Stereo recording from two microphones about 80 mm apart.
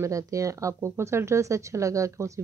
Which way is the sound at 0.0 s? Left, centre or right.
Right.